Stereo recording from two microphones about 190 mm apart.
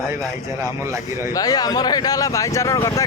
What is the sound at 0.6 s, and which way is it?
Speech, 15° right (ahead or behind).